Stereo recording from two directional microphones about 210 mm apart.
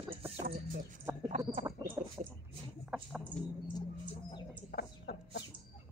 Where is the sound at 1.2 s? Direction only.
35° right (ahead or behind).